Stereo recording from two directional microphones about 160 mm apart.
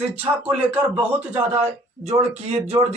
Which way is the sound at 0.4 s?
35° right (ahead or behind).